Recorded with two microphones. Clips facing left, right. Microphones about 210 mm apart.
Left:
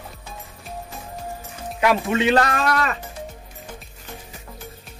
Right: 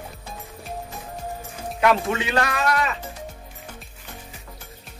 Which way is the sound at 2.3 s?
45° left (ahead or behind).